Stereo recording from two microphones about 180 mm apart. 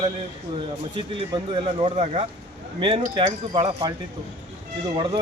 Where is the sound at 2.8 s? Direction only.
30° right (ahead or behind).